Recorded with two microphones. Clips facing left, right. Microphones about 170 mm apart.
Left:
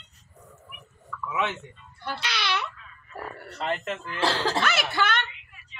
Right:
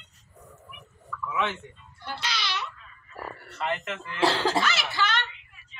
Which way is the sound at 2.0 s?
60° left (ahead or behind).